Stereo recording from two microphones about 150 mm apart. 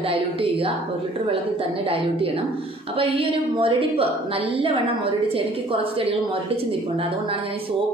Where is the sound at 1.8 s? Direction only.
40° right (ahead or behind).